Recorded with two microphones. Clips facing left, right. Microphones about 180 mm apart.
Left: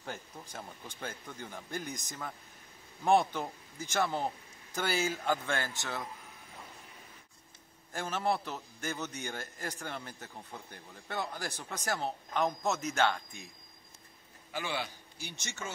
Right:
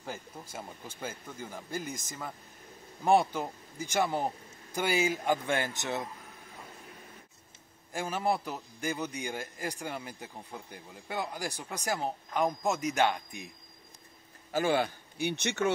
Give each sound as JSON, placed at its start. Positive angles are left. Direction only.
{"t": 0.0, "sound": "a man's voice", "side_deg": -10}
{"t": 7.9, "sound": "a man's voice", "side_deg": -10}
{"t": 14.5, "sound": "a man's voice", "side_deg": -50}